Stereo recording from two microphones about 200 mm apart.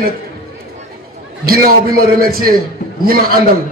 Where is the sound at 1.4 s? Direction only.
50° right (ahead or behind).